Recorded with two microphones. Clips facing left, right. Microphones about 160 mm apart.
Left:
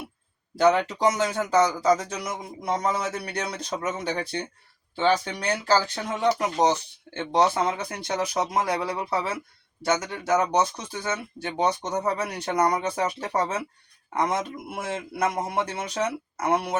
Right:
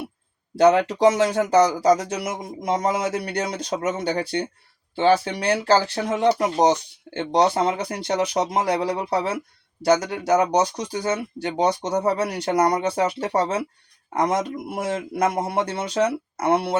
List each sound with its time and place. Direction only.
0.5 s speech: 30° right (ahead or behind)